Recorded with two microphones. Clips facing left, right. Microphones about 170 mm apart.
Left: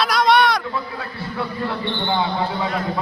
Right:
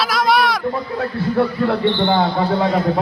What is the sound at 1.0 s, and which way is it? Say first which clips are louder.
Speech: right 10 dB; 50° right (ahead or behind).